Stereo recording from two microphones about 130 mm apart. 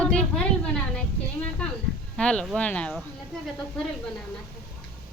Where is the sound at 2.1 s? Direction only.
5° left (ahead or behind).